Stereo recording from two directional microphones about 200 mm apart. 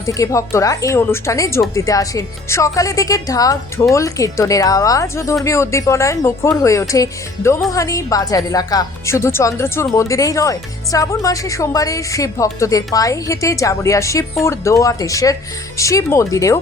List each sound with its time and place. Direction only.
0.0 s a woman's voice: 15° left (ahead or behind)